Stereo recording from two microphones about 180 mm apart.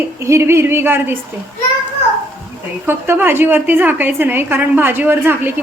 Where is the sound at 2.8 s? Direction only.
10° right (ahead or behind).